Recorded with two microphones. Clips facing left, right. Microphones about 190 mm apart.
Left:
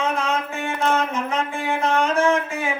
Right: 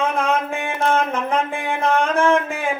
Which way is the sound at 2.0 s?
55° right (ahead or behind).